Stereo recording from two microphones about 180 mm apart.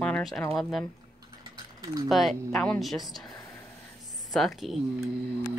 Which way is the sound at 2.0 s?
Centre (ahead or behind).